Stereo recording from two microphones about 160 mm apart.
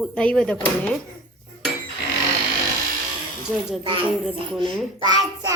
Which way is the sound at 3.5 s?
Centre (ahead or behind).